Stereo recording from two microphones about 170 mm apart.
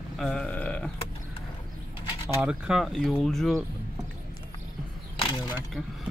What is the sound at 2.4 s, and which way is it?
Speech, 5° right (ahead or behind).